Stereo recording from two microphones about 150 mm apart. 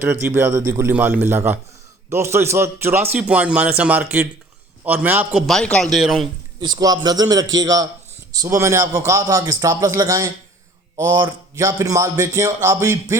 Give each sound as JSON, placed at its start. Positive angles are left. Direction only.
{"t": 0.0, "sound": "a man's voice", "side_deg": -15}
{"t": 5.5, "sound": "speech", "side_deg": 5}
{"t": 6.6, "sound": "a man's voice", "side_deg": -25}